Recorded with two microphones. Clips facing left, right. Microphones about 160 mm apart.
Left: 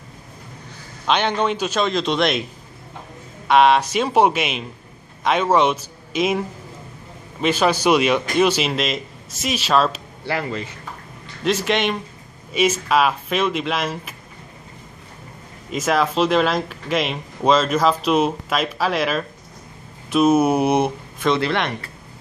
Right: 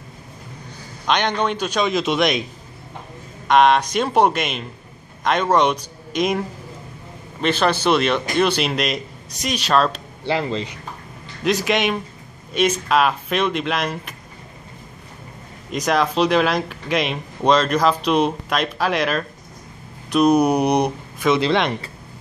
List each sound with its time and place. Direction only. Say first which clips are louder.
1.0 s speech: left 1 dB; 5° left (ahead or behind)
3.4 s a man's voice: even; 5° left (ahead or behind)
10.2 s speech: right 3 dB; 20° right (ahead or behind)
11.4 s speech: right 1 dB; centre (ahead or behind)
15.7 s speech: even; 5° left (ahead or behind)
21.3 s speech: right 2 dB; 20° right (ahead or behind)